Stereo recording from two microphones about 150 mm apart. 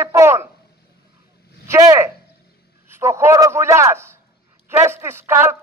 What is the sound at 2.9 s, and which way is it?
A man's voice, 15° right (ahead or behind).